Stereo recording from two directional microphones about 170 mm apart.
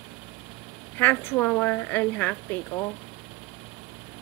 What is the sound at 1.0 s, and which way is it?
Speech, 15° left (ahead or behind).